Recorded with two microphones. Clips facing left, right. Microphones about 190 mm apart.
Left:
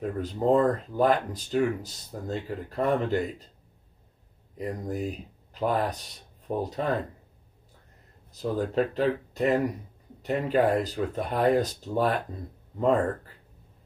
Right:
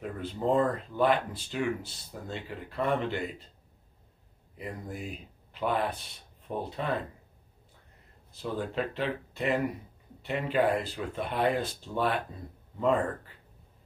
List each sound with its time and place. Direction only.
0.0 s speech: 40° left (ahead or behind)
4.6 s speech: 40° left (ahead or behind)
8.4 s speech: 40° left (ahead or behind)